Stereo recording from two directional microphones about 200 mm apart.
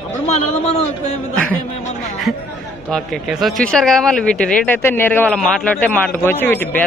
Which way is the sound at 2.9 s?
Centre (ahead or behind).